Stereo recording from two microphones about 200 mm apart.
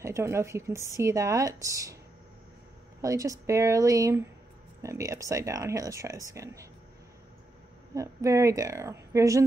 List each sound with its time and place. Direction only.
0.0 s speech: 15° right (ahead or behind)
3.0 s speech: 15° right (ahead or behind)
7.9 s speech: 15° right (ahead or behind)